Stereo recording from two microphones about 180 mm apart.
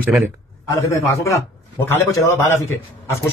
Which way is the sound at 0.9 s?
15° left (ahead or behind).